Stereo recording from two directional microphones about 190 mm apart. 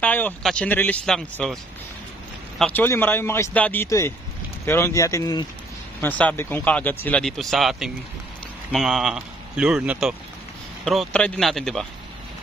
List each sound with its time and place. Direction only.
0.0 s speech: 10° left (ahead or behind)
2.6 s speech: 10° left (ahead or behind)
5.9 s speech: 10° left (ahead or behind)